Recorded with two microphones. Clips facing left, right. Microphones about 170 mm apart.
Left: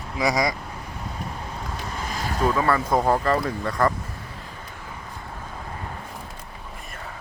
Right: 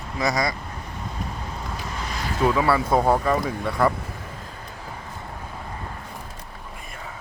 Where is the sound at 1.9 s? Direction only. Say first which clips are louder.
Left 2 dB; 45° left (ahead or behind).